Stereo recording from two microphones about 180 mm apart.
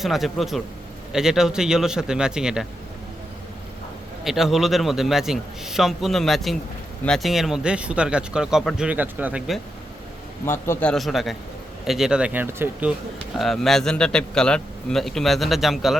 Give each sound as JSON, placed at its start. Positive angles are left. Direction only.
{"t": 0.0, "sound": "a man's voice", "side_deg": 0}
{"t": 4.2, "sound": "a man's voice", "side_deg": 0}
{"t": 10.4, "sound": "a man's voice", "side_deg": 10}
{"t": 13.4, "sound": "a man's voice", "side_deg": 0}